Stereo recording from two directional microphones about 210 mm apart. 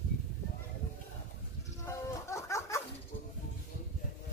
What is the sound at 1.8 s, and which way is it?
Music, 15° left (ahead or behind).